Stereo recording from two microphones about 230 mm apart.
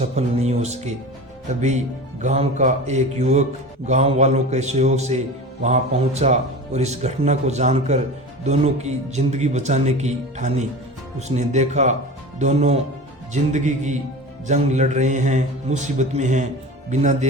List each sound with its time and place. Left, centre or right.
0.0 s speech: right
2.2 s a man's voice: right